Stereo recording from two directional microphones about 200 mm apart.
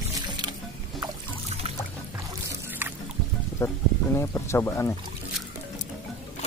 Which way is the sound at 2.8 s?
10° right (ahead or behind).